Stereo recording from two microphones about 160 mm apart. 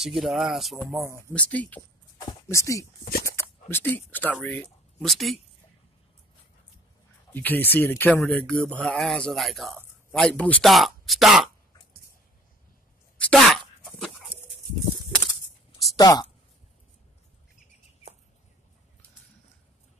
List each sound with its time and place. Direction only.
0.0 s speech: centre (ahead or behind)
7.3 s speech: 10° left (ahead or behind)
13.2 s a sound: 5° left (ahead or behind)
15.9 s speech: 25° left (ahead or behind)